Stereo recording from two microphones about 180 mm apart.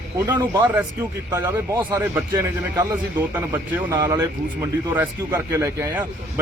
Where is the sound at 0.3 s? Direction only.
15° right (ahead or behind).